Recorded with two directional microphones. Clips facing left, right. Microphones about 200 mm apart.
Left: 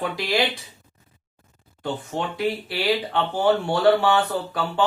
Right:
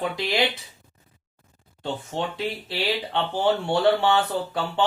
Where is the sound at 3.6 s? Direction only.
25° right (ahead or behind).